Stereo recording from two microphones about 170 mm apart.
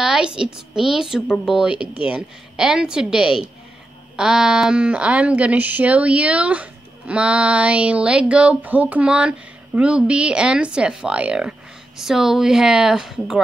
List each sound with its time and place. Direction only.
0.0 s a woman's voice: 5° right (ahead or behind)